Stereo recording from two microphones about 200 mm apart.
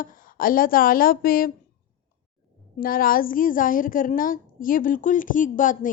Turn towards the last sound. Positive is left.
turn(degrees=40)  # may be behind; listen again after turning